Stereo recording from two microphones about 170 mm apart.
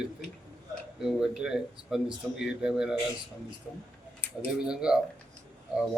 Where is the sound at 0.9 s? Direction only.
5° right (ahead or behind).